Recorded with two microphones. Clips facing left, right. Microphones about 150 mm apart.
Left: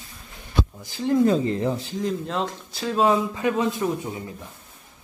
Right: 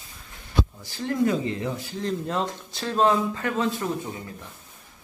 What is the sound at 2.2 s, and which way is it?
Speech, centre (ahead or behind).